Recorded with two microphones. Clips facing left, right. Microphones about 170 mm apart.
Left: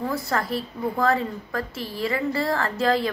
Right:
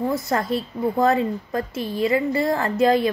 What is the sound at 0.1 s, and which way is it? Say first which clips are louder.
A woman's voice: right 3 dB; 20° right (ahead or behind).